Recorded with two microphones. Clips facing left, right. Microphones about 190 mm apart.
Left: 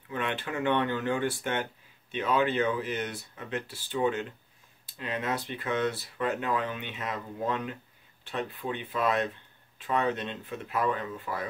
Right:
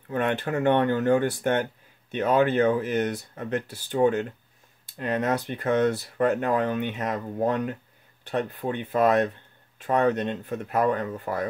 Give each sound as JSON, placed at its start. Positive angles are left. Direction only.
{"t": 0.1, "sound": "speech", "side_deg": -50}